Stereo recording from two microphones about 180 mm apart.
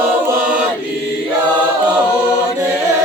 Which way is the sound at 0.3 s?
10° right (ahead or behind).